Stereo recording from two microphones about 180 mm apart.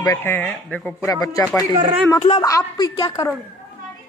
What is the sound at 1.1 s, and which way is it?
A woman's voice, 20° left (ahead or behind).